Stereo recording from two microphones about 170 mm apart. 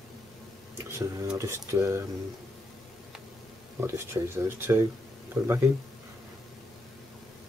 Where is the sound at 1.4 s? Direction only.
15° right (ahead or behind).